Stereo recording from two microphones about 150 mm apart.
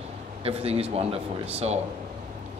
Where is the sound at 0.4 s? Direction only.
40° right (ahead or behind).